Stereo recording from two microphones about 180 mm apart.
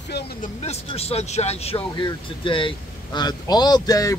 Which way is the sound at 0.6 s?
35° left (ahead or behind).